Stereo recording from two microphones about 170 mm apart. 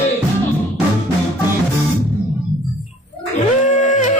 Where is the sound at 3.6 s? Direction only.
45° left (ahead or behind).